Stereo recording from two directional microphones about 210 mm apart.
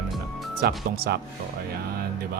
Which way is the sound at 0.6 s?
45° right (ahead or behind).